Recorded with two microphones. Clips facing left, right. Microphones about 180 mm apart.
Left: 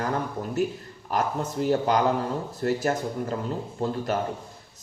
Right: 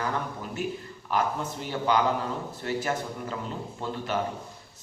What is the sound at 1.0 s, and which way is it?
Speech, 40° left (ahead or behind).